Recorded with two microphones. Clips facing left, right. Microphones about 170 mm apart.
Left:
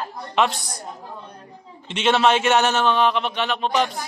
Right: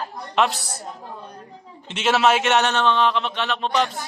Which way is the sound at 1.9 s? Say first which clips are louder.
Left 1 dB; centre (ahead or behind).